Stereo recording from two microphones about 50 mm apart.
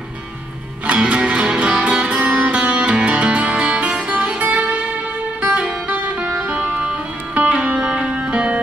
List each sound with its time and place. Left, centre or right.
0.8 s music: right